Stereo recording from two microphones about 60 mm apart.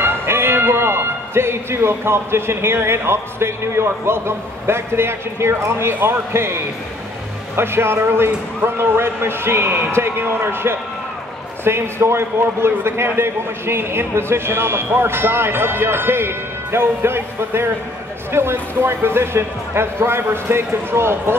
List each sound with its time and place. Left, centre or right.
0.0 s a man's voice: right